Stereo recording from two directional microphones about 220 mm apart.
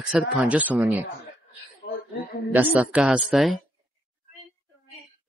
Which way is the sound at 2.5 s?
10° right (ahead or behind).